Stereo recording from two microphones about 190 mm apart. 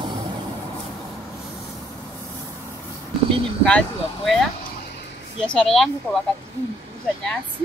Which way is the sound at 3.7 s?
5° left (ahead or behind).